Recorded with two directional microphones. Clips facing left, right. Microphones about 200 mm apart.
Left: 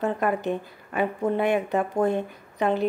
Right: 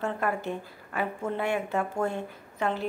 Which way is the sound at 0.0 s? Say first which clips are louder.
Left 5 dB; 20° left (ahead or behind).